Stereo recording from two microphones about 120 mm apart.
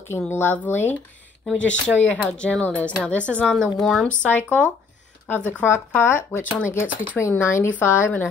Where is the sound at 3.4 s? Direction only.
Centre (ahead or behind); by 6.4 s 20° left (ahead or behind).